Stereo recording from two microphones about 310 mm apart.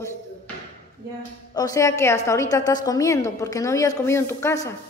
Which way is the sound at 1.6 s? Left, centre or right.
Centre.